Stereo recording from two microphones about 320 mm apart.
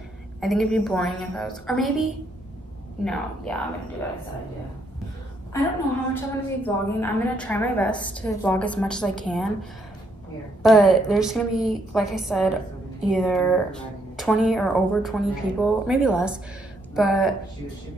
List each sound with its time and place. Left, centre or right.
0.4 s speech: centre
6.1 s speech: centre
10.6 s speech: centre